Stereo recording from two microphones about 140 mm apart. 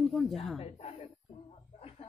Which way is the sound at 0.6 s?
45° left (ahead or behind).